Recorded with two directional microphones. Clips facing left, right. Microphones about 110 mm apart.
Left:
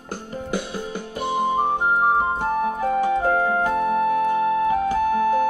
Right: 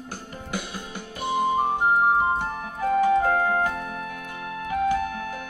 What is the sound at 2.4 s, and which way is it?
Music, 40° left (ahead or behind).